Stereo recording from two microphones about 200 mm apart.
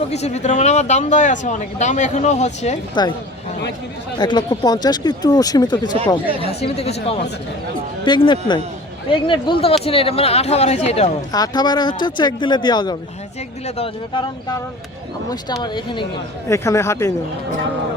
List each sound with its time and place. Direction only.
0.1 s speech: 35° left (ahead or behind)
4.2 s speech: 20° left (ahead or behind)
6.6 s speech: 30° left (ahead or behind)
11.3 s speech: 20° left (ahead or behind)
15.6 s speech: 25° left (ahead or behind)